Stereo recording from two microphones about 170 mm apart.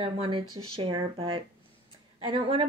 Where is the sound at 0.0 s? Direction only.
30° right (ahead or behind).